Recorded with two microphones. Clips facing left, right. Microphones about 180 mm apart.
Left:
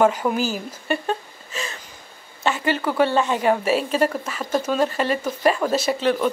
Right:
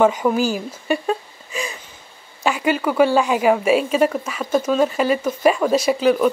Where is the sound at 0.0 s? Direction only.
5° left (ahead or behind).